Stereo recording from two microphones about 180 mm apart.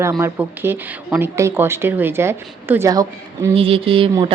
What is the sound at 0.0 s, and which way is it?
Speech, 15° right (ahead or behind).